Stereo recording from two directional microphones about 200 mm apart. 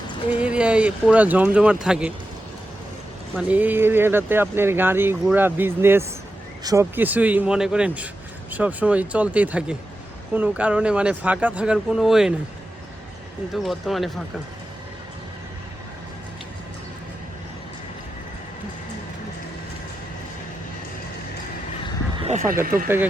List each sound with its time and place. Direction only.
0.3 s speech: 5° right (ahead or behind)
3.5 s speech: 10° right (ahead or behind)
13.5 s speech: centre (ahead or behind)
22.2 s neigh: 35° right (ahead or behind)